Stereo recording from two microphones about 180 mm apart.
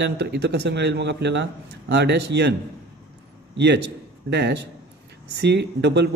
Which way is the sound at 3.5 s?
70° right (ahead or behind).